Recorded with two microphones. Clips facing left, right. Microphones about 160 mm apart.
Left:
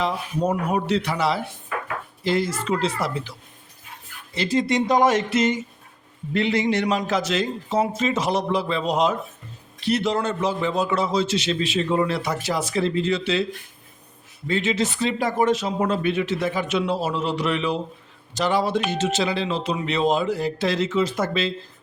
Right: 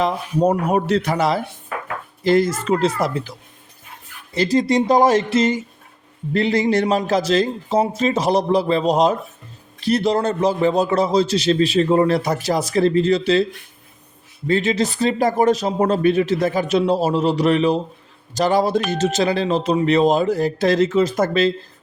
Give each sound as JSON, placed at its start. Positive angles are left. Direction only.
{"t": 0.0, "sound": "speech", "side_deg": -40}
{"t": 4.4, "sound": "a man's voice", "side_deg": -40}
{"t": 14.4, "sound": "a man's voice", "side_deg": -40}